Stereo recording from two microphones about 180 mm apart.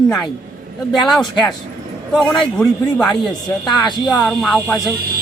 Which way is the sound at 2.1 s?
5° left (ahead or behind).